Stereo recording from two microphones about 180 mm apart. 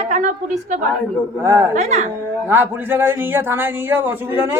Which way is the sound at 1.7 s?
40° right (ahead or behind).